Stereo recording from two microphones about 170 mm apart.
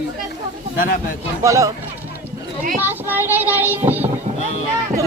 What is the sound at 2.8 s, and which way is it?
Child singing, 10° right (ahead or behind).